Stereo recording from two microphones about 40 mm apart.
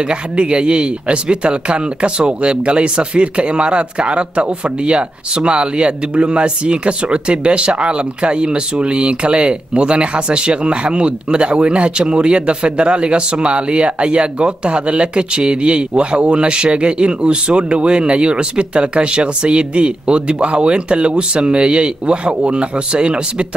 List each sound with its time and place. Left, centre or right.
0.1 s a man's voice: right